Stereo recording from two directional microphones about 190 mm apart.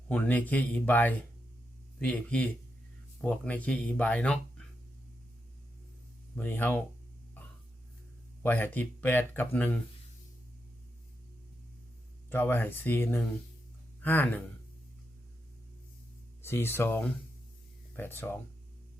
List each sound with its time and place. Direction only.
0.1 s speech: 10° left (ahead or behind)
6.3 s speech: 10° left (ahead or behind)
8.4 s speech: 10° left (ahead or behind)
12.3 s speech: 10° left (ahead or behind)
16.4 s speech: 10° left (ahead or behind)